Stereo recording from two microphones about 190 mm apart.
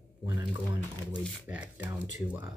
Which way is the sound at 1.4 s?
5° right (ahead or behind).